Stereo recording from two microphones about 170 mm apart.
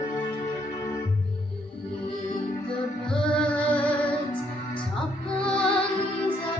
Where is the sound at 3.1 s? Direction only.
5° left (ahead or behind).